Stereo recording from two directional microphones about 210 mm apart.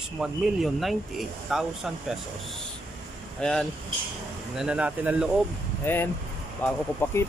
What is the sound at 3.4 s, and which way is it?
Speech, 5° left (ahead or behind).